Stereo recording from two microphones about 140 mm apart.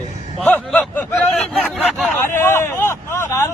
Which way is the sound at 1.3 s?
Centre (ahead or behind).